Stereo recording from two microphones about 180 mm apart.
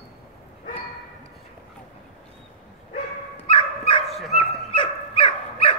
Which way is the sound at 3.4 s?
30° left (ahead or behind).